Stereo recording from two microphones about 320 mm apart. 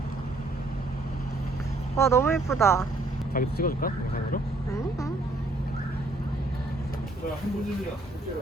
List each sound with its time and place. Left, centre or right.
2.0 s speech: centre
3.3 s speech: left
4.7 s vehicle: centre